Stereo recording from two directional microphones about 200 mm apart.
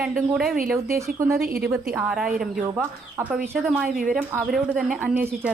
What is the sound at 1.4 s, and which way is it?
Speech, 50° right (ahead or behind).